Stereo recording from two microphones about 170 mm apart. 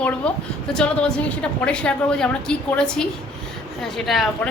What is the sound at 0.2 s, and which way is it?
A woman's voice, 5° left (ahead or behind).